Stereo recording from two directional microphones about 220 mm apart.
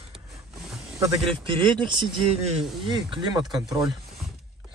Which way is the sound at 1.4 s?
20° right (ahead or behind).